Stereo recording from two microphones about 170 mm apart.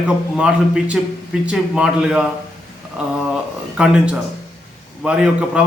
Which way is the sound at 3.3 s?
5° right (ahead or behind).